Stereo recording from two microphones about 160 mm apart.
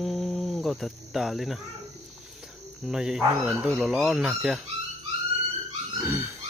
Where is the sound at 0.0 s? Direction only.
Centre (ahead or behind).